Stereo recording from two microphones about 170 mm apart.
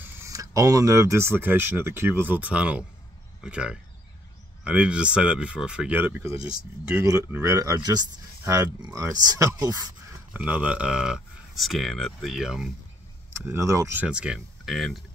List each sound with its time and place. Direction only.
0.0 s speech: 20° right (ahead or behind)
10.3 s speech: 10° right (ahead or behind)
13.5 s speech: 15° right (ahead or behind); by 14.9 s centre (ahead or behind)